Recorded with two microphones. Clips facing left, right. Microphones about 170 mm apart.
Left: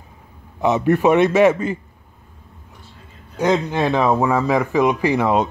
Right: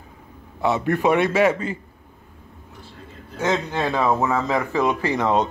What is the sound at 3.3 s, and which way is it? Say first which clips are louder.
Speech: left 5 dB; 15° left (ahead or behind).